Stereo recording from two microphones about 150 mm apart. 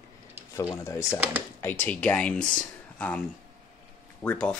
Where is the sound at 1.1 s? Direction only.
10° right (ahead or behind).